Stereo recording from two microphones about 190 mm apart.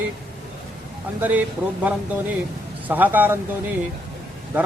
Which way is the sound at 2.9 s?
10° right (ahead or behind).